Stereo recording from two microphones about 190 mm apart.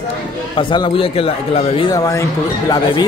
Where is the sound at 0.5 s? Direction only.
25° left (ahead or behind).